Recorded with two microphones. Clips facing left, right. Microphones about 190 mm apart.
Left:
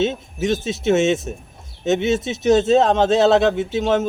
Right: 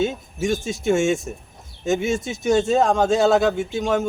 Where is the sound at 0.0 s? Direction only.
20° left (ahead or behind).